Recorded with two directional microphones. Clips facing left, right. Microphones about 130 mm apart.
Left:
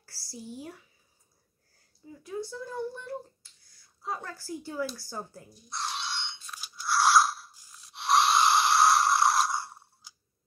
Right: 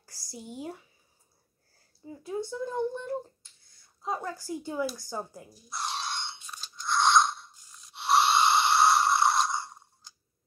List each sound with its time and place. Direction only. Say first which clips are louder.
0.0 s a child's voice: even; 20° right (ahead or behind)
2.0 s a child's voice: right 3 dB; 25° right (ahead or behind)
5.5 s speech: even; centre (ahead or behind)
5.9 s crunch: right 2 dB; 40° right (ahead or behind)
6.6 s crunch: even; 5° left (ahead or behind)